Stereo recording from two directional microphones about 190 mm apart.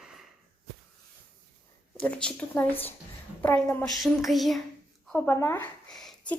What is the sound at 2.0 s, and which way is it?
A woman's voice, 5° left (ahead or behind).